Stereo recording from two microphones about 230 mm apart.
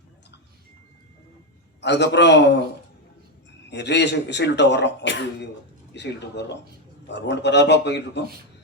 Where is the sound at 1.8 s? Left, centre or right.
Left.